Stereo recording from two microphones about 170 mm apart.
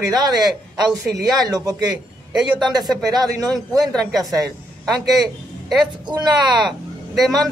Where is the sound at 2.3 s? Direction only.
Centre (ahead or behind).